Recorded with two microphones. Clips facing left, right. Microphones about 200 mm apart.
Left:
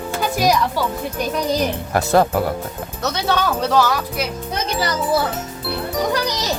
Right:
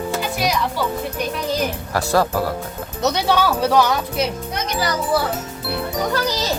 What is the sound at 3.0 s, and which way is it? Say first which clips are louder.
Speech: right 2 dB; 15° right (ahead or behind).